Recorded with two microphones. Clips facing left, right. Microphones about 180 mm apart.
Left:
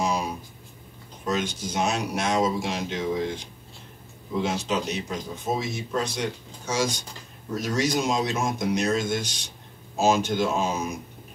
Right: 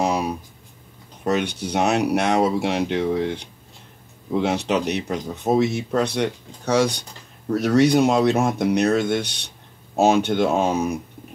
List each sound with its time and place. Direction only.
0.0 s writing: 65° right (ahead or behind)
1.2 s speech: 65° right (ahead or behind)